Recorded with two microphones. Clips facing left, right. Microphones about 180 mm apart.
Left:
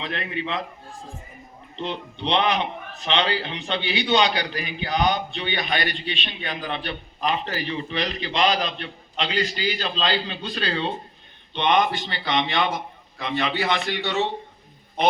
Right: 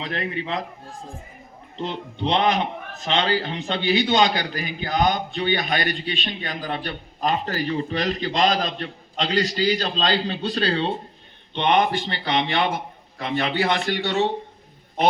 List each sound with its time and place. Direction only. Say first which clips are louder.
0.0 s a man's voice: right 1 dB; 40° right (ahead or behind)
1.8 s a man's voice: right 2 dB; 45° right (ahead or behind)